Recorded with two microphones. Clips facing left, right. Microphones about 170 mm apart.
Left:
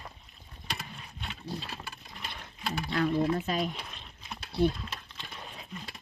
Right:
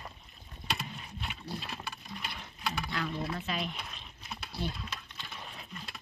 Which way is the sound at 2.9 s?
45° left (ahead or behind).